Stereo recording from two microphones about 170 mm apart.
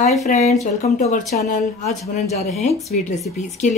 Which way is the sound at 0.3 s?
40° left (ahead or behind).